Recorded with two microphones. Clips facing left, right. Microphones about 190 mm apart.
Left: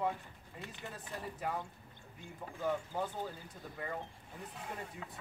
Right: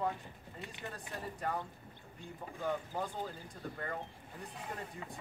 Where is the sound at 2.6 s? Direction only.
5° left (ahead or behind).